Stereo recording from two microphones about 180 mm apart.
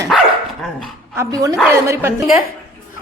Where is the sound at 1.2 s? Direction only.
20° right (ahead or behind).